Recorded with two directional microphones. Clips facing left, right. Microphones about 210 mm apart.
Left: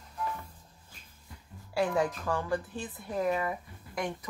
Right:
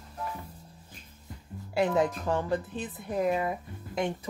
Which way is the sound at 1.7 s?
20° right (ahead or behind).